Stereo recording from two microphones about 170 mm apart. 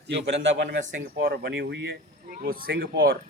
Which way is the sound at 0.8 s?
45° right (ahead or behind).